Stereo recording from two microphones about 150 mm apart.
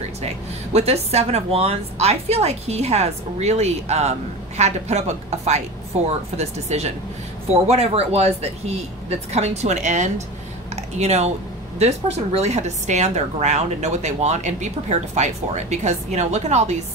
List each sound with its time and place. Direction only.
0.7 s a woman's voice: 45° right (ahead or behind)